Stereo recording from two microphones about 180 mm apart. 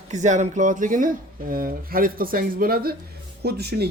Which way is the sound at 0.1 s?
40° right (ahead or behind).